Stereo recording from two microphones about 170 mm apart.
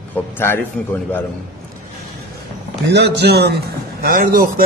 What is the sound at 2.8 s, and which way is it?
Speech, 85° right.